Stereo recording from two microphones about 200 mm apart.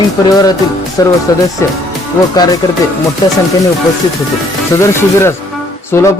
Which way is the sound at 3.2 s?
20° left (ahead or behind).